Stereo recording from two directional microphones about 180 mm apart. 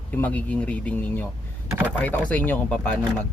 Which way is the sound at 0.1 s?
10° left (ahead or behind).